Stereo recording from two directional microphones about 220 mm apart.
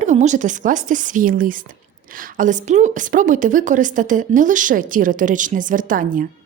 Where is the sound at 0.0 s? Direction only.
30° right (ahead or behind).